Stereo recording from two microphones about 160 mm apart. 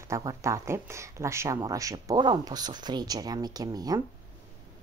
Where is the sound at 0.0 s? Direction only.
20° right (ahead or behind).